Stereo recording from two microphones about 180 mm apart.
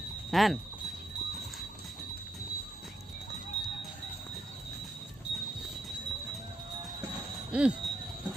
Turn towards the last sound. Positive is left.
turn(degrees=-5)  # may be behind; listen again after turning